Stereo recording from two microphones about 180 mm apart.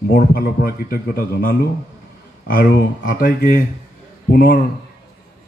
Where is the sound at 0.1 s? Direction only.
55° left (ahead or behind).